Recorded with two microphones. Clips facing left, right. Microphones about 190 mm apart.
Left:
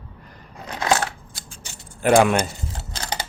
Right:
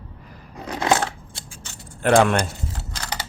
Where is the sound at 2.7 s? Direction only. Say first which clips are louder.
Left 2 dB; 20° left (ahead or behind).